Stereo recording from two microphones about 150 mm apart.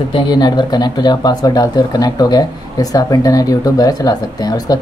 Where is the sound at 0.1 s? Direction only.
30° left (ahead or behind).